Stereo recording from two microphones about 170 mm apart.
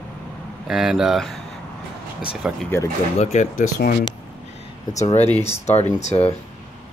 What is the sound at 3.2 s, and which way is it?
Speech, 45° left (ahead or behind).